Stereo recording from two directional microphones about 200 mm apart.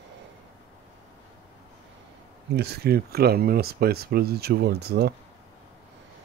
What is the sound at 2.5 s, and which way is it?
Speech, 55° right (ahead or behind).